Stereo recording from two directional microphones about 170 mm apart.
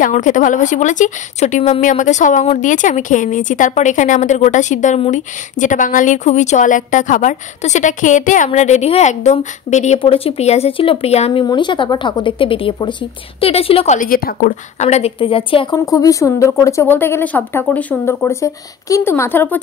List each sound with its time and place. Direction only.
0.0 s speech: 50° left (ahead or behind)
9.9 s speech: 35° left (ahead or behind)
11.4 s speech: 25° left (ahead or behind)
13.9 s speech: 55° left (ahead or behind)
14.8 s speech: 40° left (ahead or behind)
15.8 s a woman's voice: 20° left (ahead or behind)